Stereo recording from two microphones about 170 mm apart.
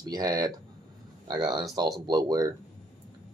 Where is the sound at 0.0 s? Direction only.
20° right (ahead or behind).